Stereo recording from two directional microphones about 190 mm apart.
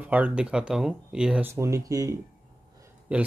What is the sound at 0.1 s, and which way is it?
Speech, 5° right (ahead or behind).